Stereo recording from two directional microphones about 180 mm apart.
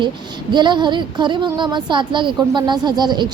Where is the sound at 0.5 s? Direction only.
25° right (ahead or behind).